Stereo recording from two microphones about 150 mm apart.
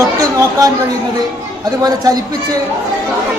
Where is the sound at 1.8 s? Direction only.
25° right (ahead or behind).